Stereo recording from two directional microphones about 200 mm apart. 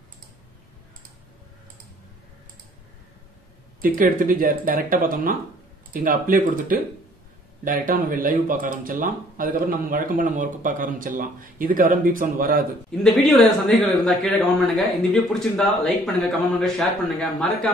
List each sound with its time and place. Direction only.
3.8 s speech: 45° right (ahead or behind)
13.0 s speech: centre (ahead or behind)
15.3 s speech: 5° left (ahead or behind)